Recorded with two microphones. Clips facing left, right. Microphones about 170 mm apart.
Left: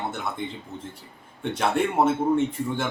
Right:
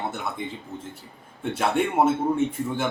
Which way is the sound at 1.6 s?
5° right (ahead or behind).